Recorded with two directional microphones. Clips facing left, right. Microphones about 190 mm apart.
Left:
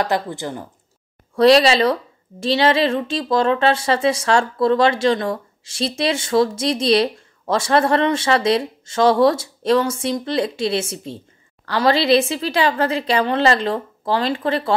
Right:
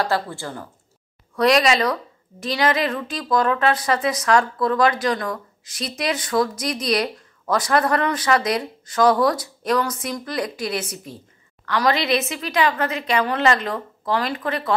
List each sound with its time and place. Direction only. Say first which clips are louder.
0.0 s speech: left 2 dB; 20° left (ahead or behind)
1.3 s speech: left 5 dB; 30° left (ahead or behind)